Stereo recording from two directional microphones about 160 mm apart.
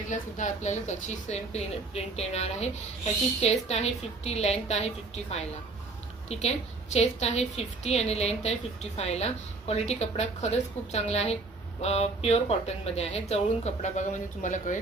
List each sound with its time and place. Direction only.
0.1 s a woman's voice: 50° left (ahead or behind)